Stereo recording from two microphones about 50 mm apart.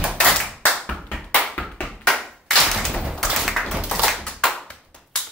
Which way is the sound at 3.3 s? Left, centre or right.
Centre.